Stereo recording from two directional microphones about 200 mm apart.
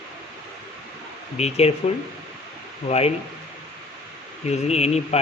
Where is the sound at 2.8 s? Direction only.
30° left (ahead or behind).